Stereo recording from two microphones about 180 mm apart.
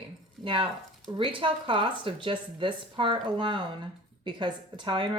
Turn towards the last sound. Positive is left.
turn(degrees=-25)  # may be behind; listen again after turning